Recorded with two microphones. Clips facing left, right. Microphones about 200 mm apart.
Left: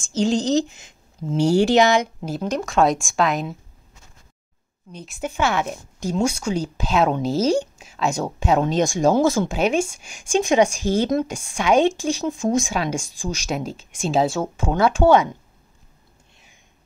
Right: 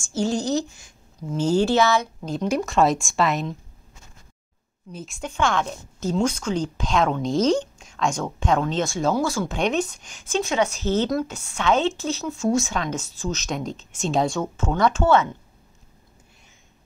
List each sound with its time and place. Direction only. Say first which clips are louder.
0.1 s speech: left 4 dB; 20° left (ahead or behind)
2.4 s speech: left 1 dB; 5° right (ahead or behind)
4.9 s speech: left 3 dB; centre (ahead or behind); by 9.5 s 20° left (ahead or behind)
9.5 s speech: left 3 dB; 10° left (ahead or behind)